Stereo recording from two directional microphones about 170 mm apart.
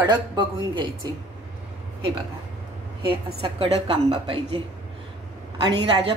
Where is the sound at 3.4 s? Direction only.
35° right (ahead or behind).